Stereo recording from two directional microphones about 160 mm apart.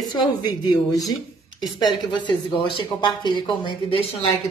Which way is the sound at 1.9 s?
30° left (ahead or behind).